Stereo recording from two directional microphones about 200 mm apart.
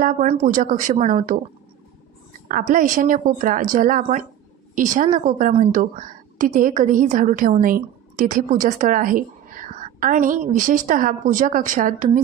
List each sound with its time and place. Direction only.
0.0 s a woman's voice: 40° right (ahead or behind)
2.4 s a woman's voice: 40° right (ahead or behind)